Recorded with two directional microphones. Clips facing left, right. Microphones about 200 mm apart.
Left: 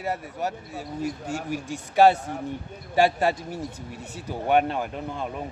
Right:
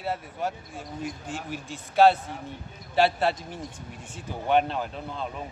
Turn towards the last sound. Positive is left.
turn(degrees=10)  # may be behind; listen again after turning